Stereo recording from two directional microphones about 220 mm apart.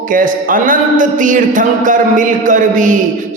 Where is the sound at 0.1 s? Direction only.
40° right (ahead or behind).